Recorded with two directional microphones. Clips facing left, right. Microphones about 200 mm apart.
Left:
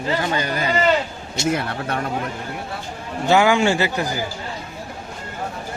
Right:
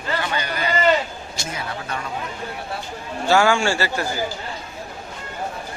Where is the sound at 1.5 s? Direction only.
60° left (ahead or behind).